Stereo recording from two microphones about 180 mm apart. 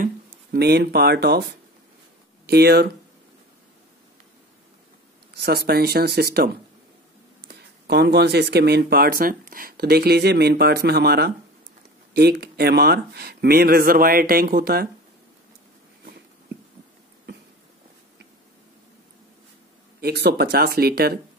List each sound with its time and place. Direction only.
0.0 s speech: 55° right (ahead or behind)
5.3 s speech: 65° right (ahead or behind)
20.0 s speech: 60° right (ahead or behind)